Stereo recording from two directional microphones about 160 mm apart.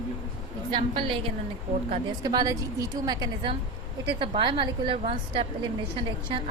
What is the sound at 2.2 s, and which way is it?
A woman's voice, 25° right (ahead or behind).